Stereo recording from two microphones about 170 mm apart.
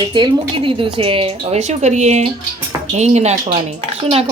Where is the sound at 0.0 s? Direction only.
25° right (ahead or behind).